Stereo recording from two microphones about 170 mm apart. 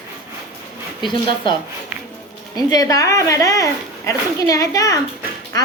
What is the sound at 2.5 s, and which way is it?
A woman's voice, 20° left (ahead or behind).